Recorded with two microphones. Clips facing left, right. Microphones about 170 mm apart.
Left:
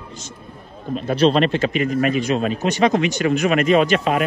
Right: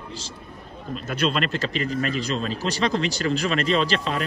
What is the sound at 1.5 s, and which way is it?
Speech, 35° right (ahead or behind).